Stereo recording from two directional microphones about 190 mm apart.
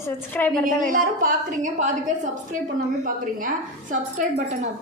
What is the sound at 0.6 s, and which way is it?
A woman's voice, 45° right (ahead or behind).